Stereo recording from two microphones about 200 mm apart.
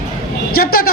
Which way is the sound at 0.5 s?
50° left (ahead or behind).